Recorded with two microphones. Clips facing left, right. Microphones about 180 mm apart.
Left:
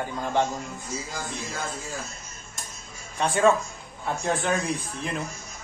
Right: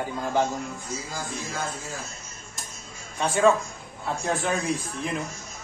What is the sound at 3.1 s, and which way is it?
A man's voice, centre (ahead or behind).